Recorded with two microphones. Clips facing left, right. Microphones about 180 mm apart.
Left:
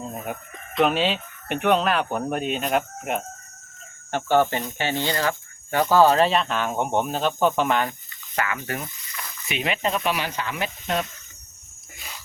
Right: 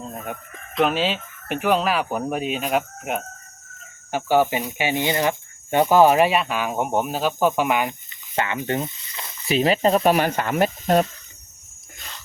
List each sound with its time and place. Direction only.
0.0 s chicken: centre (ahead or behind)
4.1 s speech: 10° right (ahead or behind)
8.4 s speech: 25° right (ahead or behind); by 11.1 s 40° right (ahead or behind)
11.9 s a sound: 5° left (ahead or behind)